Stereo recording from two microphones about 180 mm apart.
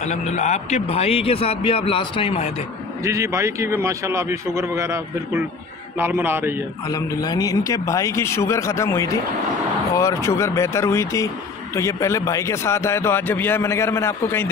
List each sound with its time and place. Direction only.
0.0 s a man's voice: 40° left (ahead or behind)
3.0 s a man's voice: 15° right (ahead or behind)
6.9 s a man's voice: 20° left (ahead or behind)